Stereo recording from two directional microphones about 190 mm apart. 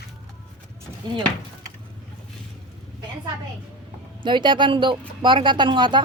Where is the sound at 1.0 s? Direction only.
20° right (ahead or behind).